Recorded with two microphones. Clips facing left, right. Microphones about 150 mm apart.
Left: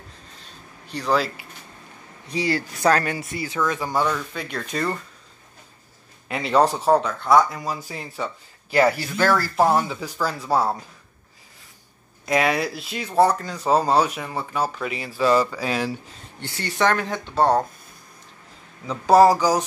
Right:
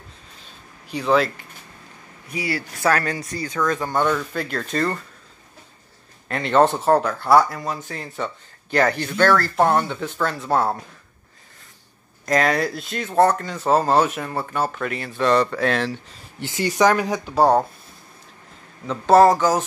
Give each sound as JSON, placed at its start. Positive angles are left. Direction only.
{"t": 0.4, "sound": "a sound", "side_deg": 0}
{"t": 2.3, "sound": "speech", "side_deg": 25}
{"t": 3.6, "sound": "speech", "side_deg": 5}
{"t": 6.2, "sound": "speech", "side_deg": 5}
{"t": 12.3, "sound": "speech", "side_deg": 5}
{"t": 16.3, "sound": "speech", "side_deg": -15}
{"t": 18.9, "sound": "speech", "side_deg": 0}